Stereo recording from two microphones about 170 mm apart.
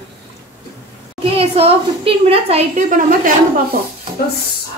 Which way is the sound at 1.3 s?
35° right (ahead or behind).